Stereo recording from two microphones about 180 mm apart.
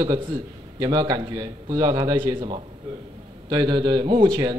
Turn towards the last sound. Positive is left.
turn(degrees=-20)  # may be behind; listen again after turning